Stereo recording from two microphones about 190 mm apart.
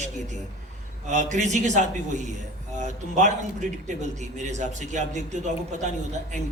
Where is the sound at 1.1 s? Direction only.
40° right (ahead or behind).